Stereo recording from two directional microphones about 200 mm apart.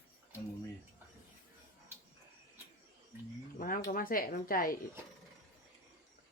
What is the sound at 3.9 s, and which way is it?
Speech, 45° left (ahead or behind).